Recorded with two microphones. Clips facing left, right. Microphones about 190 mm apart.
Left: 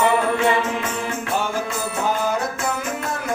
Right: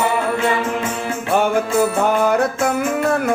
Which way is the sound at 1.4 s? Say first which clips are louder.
Right 13 dB; 60° right (ahead or behind).